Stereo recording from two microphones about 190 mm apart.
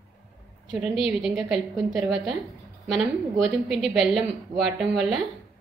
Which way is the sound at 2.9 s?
Centre (ahead or behind).